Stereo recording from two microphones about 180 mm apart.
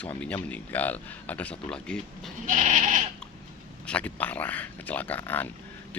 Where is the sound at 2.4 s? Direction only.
45° right (ahead or behind).